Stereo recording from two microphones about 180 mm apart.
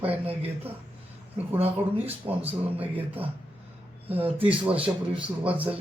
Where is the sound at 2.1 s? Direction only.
10° right (ahead or behind).